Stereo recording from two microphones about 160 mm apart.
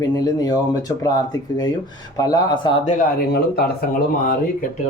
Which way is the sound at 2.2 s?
25° left (ahead or behind).